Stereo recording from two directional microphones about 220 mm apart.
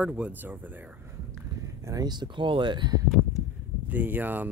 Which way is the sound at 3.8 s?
10° right (ahead or behind).